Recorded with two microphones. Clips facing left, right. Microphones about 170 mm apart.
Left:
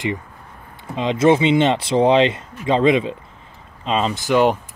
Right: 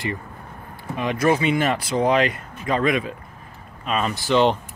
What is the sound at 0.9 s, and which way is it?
Speech, 25° left (ahead or behind).